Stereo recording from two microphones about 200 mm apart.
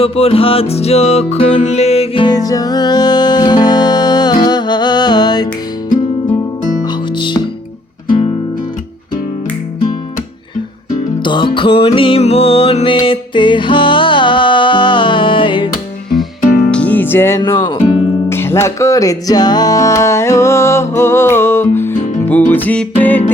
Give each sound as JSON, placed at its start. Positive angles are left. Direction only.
{"t": 0.0, "sound": "music", "side_deg": 30}
{"t": 7.2, "sound": "music", "side_deg": 25}
{"t": 11.2, "sound": "music", "side_deg": 25}
{"t": 16.7, "sound": "music", "side_deg": 10}